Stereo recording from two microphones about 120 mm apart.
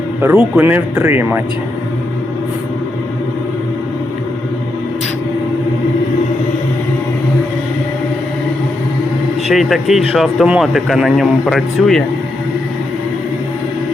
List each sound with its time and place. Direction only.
0.2 s speech: 20° right (ahead or behind)
9.5 s a man's voice: centre (ahead or behind)